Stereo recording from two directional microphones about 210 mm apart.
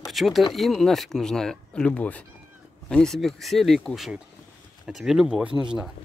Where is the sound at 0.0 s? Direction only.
Centre (ahead or behind).